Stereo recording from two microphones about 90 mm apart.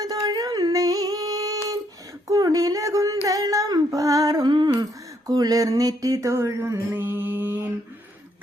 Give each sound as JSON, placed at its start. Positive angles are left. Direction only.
{"t": 0.0, "sound": "singing", "side_deg": -45}
{"t": 2.2, "sound": "a sound", "side_deg": -40}
{"t": 4.8, "sound": "speech", "side_deg": -45}